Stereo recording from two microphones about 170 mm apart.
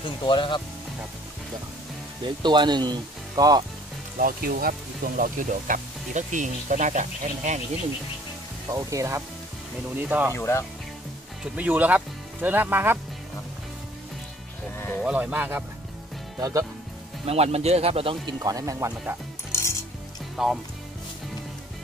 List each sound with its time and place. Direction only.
0.0 s speech: 30° left (ahead or behind)
2.2 s speech: 25° right (ahead or behind)
4.2 s speech: 60° right (ahead or behind)
8.6 s speech: 20° right (ahead or behind)
10.3 s speech: 15° left (ahead or behind)
11.5 s speech: 10° right (ahead or behind)
14.8 s sheep: 10° left (ahead or behind)
15.0 s speech: 10° right (ahead or behind)
17.3 s speech: 35° right (ahead or behind)
18.4 s speech: 20° right (ahead or behind)
19.5 s cutlery: 15° left (ahead or behind)
20.4 s speech: centre (ahead or behind)